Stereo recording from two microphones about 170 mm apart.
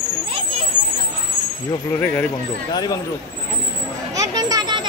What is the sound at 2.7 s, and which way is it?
Speech, 25° left (ahead or behind).